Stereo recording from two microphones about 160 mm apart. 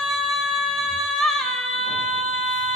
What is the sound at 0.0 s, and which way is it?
Music, centre (ahead or behind).